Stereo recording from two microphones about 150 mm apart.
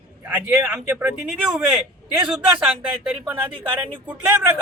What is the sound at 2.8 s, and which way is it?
Speech, 10° right (ahead or behind).